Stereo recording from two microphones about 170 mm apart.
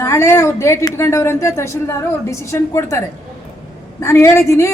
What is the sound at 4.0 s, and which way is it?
Speech, 15° left (ahead or behind).